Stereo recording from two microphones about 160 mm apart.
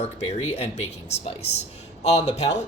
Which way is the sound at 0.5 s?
45° left (ahead or behind).